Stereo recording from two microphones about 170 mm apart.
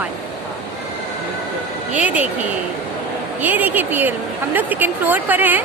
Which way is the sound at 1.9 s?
10° right (ahead or behind).